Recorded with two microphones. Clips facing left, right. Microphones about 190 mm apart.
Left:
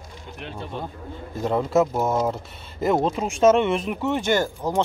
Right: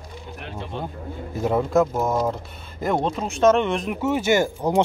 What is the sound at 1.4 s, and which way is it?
Speech, 5° right (ahead or behind).